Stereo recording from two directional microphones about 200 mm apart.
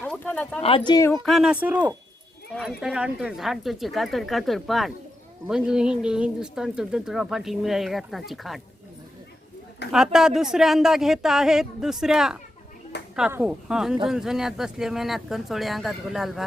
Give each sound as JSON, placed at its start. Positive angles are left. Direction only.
{"t": 0.0, "sound": "a sound", "side_deg": 5}
{"t": 0.9, "sound": "speech", "side_deg": 15}
{"t": 1.2, "sound": "speech", "side_deg": 0}
{"t": 9.9, "sound": "speech", "side_deg": -5}